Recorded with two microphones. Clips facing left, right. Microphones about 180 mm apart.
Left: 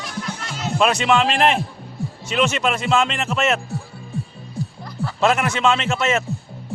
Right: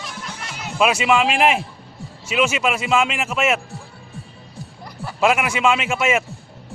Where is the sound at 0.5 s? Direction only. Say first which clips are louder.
Even; 10° right (ahead or behind).